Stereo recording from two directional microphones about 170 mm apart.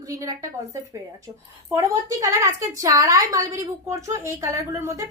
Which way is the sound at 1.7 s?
20° right (ahead or behind).